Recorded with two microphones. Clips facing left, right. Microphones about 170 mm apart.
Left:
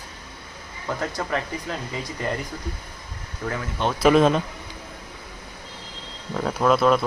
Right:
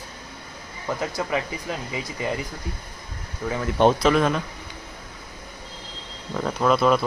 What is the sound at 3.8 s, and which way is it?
Speech, 55° right (ahead or behind).